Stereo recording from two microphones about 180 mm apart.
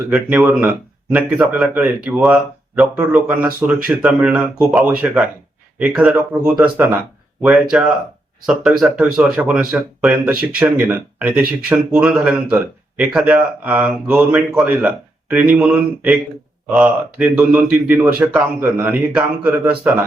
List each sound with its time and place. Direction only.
0.1 s speech: 5° right (ahead or behind)